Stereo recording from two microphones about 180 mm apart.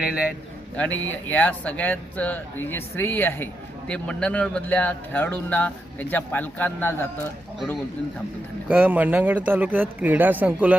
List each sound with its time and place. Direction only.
0.0 s a man's voice: 5° right (ahead or behind)
0.8 s speech: 10° left (ahead or behind)
8.6 s speech: 10° right (ahead or behind)